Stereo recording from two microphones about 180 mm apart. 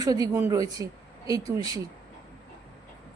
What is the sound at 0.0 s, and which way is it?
A woman's voice, 20° right (ahead or behind).